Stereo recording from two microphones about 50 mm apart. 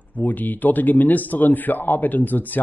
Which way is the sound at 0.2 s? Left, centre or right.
Left.